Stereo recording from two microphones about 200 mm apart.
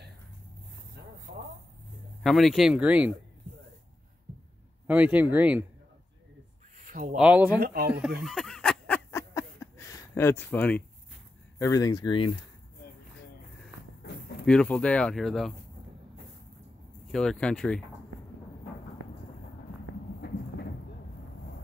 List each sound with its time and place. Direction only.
2.2 s speech: centre (ahead or behind)
4.8 s speech: 5° right (ahead or behind)
6.8 s a sound: 45° right (ahead or behind)
7.2 s speech: 5° right (ahead or behind)
7.6 s speech: 45° right (ahead or behind)
8.2 s a sound: centre (ahead or behind)
11.5 s speech: 15° left (ahead or behind)
14.4 s speech: 5° left (ahead or behind)
17.1 s speech: 5° left (ahead or behind)